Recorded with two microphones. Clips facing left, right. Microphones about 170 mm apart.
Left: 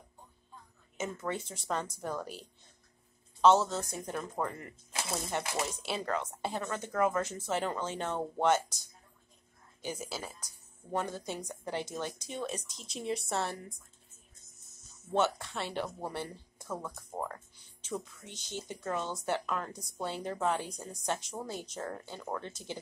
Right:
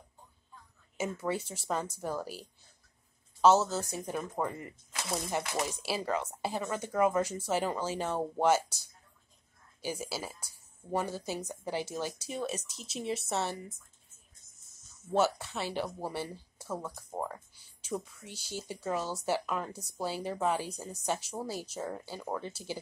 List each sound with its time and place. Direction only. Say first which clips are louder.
0.9 s speech: right 3 dB; 10° right (ahead or behind)
3.4 s speech: even; 5° right (ahead or behind)
9.8 s speech: right 2 dB; 10° right (ahead or behind)
15.1 s speech: right 2 dB; 5° right (ahead or behind)